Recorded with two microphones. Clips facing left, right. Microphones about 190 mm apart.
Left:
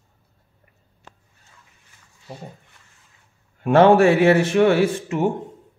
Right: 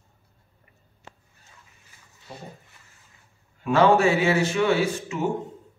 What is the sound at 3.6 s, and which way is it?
Speech, 60° left (ahead or behind).